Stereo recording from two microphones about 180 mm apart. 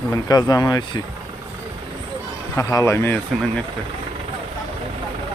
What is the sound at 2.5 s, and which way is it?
Speech, 15° left (ahead or behind).